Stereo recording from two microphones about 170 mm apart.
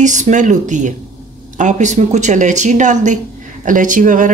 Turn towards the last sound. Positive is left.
turn(degrees=-50)  # may be behind; listen again after turning